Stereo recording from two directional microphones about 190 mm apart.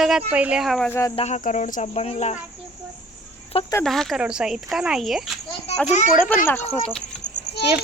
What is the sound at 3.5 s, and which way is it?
Speech, 30° left (ahead or behind).